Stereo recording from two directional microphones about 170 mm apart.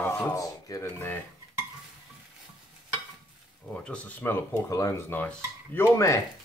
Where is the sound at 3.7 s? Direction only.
5° left (ahead or behind).